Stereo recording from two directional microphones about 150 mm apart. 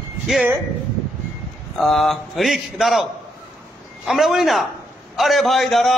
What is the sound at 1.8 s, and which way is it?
A man's voice, centre (ahead or behind).